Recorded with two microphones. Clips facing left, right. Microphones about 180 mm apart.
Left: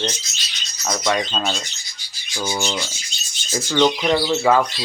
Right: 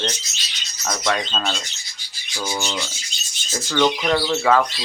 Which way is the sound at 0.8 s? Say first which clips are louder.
Left 2 dB; 5° left (ahead or behind).